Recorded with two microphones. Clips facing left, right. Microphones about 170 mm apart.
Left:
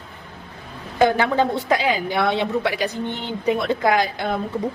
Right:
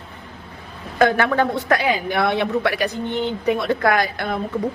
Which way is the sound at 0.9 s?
15° left (ahead or behind).